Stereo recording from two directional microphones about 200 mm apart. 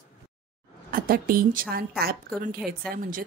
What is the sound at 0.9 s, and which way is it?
A woman's voice, 45° right (ahead or behind).